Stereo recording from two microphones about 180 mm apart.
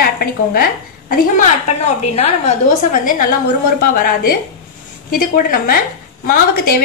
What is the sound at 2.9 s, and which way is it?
A woman's voice, 50° left (ahead or behind).